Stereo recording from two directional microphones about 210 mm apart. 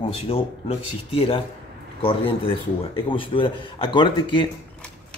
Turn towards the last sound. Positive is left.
turn(degrees=25)  # may be behind; listen again after turning